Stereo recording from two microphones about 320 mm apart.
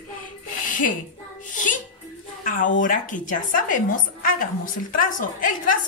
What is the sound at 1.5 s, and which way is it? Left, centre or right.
A woman's voice, left.